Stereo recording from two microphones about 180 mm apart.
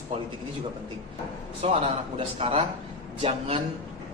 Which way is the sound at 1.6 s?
35° right (ahead or behind).